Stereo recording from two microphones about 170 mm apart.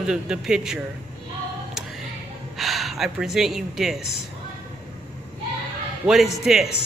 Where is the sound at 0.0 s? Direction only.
5° right (ahead or behind).